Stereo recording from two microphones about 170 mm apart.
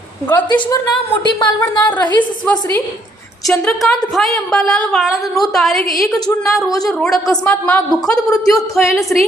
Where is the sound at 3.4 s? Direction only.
5° left (ahead or behind).